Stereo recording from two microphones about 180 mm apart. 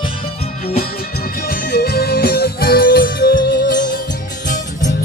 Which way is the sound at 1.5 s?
60° left (ahead or behind).